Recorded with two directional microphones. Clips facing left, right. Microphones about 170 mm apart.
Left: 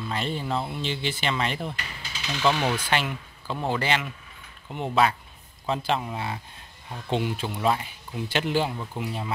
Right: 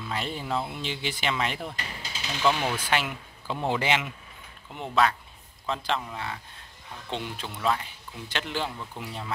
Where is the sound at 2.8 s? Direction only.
5° right (ahead or behind).